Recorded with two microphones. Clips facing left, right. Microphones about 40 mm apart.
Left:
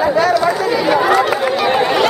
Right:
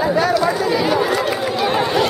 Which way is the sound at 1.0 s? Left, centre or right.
Left.